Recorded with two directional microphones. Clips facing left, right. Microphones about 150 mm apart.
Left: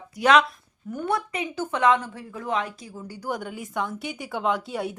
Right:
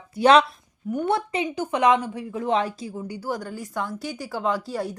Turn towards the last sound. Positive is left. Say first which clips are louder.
# even
turn(degrees=0)  # may be behind; listen again after turning